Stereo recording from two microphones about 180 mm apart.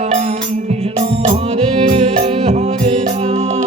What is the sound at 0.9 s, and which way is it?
Music, 35° right (ahead or behind).